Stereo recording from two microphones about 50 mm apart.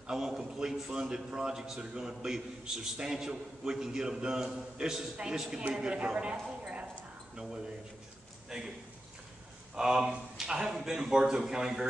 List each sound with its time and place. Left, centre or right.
0.0 s a man's voice: centre
6.3 s a woman's voice: centre
8.5 s a man's voice: centre
9.8 s a man's voice: centre